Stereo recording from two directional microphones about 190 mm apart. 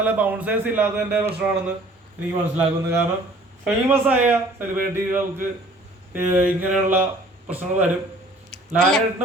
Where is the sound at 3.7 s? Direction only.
10° right (ahead or behind).